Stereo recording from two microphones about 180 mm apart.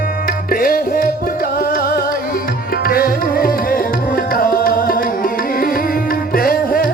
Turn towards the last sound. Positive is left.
turn(degrees=55)  # may be behind; listen again after turning